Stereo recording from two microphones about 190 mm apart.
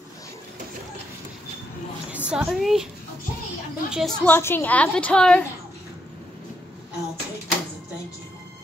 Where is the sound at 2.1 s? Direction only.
5° right (ahead or behind).